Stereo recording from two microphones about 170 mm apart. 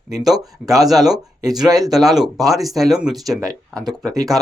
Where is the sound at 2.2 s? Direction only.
Centre (ahead or behind).